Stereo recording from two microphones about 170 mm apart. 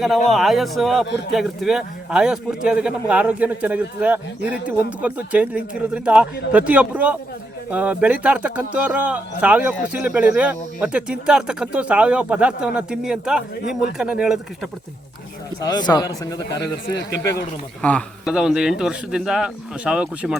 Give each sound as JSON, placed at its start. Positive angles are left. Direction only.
{"t": 0.3, "sound": "speech", "side_deg": 0}
{"t": 15.6, "sound": "a man's voice", "side_deg": 25}
{"t": 16.6, "sound": "a man's voice", "side_deg": 85}
{"t": 17.8, "sound": "a man's voice", "side_deg": 10}
{"t": 18.3, "sound": "speech", "side_deg": -5}